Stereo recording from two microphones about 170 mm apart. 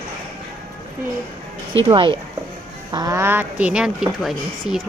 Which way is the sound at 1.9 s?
30° right (ahead or behind).